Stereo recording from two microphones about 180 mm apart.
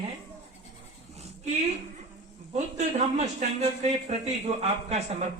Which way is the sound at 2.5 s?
40° right (ahead or behind).